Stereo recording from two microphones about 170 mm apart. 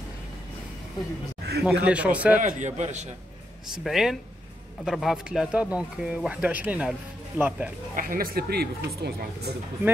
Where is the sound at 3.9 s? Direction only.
Centre (ahead or behind).